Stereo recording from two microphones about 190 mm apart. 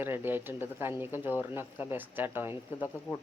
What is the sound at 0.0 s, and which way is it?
A man's voice, 10° right (ahead or behind).